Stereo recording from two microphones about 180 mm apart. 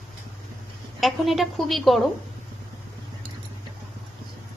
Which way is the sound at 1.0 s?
Centre (ahead or behind).